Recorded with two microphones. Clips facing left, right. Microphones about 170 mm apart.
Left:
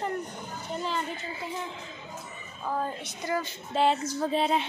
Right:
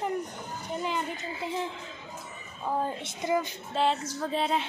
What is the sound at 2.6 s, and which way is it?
Speech, 20° right (ahead or behind).